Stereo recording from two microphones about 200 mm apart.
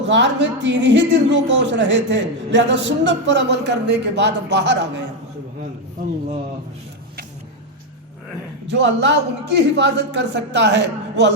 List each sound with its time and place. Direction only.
0.0 s speech: 65° right (ahead or behind)
8.8 s speech: 60° right (ahead or behind)